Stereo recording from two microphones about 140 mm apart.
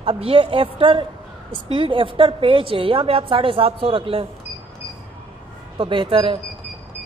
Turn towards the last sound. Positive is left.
turn(degrees=-35)  # may be behind; listen again after turning